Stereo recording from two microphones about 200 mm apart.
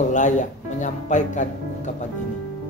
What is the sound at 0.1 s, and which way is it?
Speech, 40° left (ahead or behind).